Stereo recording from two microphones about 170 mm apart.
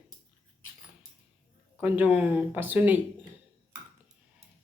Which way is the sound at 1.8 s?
10° right (ahead or behind).